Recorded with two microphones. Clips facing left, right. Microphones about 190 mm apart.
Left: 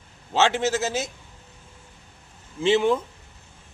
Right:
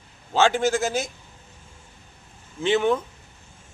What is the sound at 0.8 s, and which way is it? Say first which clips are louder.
Speech: right 1 dB; 25° left (ahead or behind).